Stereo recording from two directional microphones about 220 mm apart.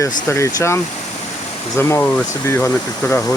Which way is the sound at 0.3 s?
10° left (ahead or behind).